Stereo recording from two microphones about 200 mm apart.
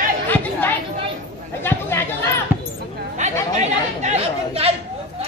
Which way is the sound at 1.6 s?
10° left (ahead or behind).